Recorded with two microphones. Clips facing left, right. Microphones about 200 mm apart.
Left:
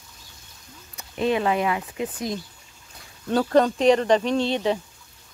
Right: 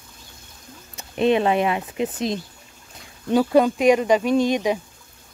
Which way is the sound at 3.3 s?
10° right (ahead or behind).